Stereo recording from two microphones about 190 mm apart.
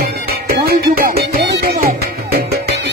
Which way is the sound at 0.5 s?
50° right (ahead or behind).